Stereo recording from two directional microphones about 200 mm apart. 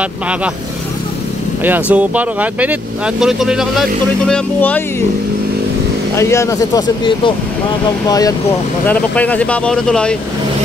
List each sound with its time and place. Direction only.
1.6 s speech: 10° right (ahead or behind)
4.3 s speech: 10° left (ahead or behind)
6.1 s speech: 15° left (ahead or behind)
8.1 s speech: 20° left (ahead or behind)
8.8 s speech: 5° left (ahead or behind)